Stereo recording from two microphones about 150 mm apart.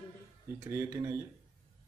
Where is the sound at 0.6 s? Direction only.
15° right (ahead or behind).